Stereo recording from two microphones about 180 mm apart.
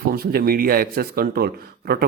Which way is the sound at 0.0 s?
55° right (ahead or behind).